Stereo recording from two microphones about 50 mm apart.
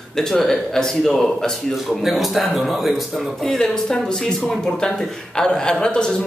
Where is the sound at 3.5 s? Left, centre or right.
Centre.